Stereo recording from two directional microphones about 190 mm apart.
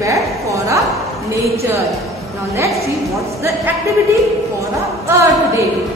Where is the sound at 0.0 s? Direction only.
15° right (ahead or behind).